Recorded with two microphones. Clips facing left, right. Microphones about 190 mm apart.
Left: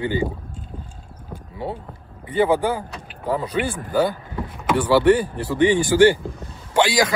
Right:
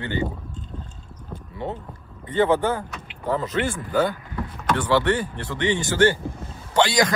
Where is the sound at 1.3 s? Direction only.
10° left (ahead or behind).